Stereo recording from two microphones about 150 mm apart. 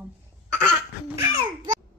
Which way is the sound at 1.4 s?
30° right (ahead or behind).